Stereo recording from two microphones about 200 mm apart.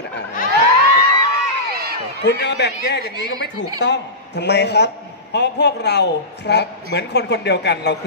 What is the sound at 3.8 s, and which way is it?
A woman's voice, 60° left (ahead or behind).